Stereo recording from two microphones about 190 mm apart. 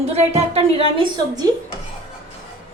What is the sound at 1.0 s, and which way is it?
Speech, 20° right (ahead or behind).